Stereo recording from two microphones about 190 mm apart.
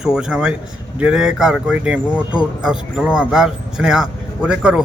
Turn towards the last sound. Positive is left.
turn(degrees=-5)  # may be behind; listen again after turning